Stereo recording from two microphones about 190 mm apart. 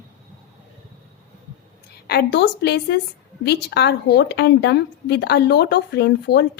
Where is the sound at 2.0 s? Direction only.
60° left (ahead or behind).